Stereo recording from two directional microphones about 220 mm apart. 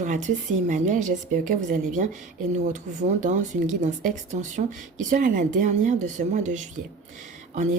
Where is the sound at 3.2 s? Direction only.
35° right (ahead or behind).